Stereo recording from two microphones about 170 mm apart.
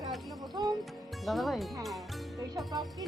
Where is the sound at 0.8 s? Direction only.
Centre (ahead or behind).